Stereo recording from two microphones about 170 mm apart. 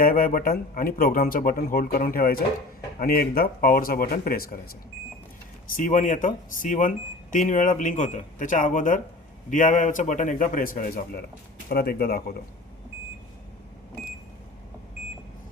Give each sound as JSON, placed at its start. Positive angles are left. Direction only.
{"t": 0.0, "sound": "speech", "side_deg": 55}
{"t": 5.7, "sound": "speech", "side_deg": 50}